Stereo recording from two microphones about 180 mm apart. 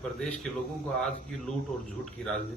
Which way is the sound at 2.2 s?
5° left (ahead or behind).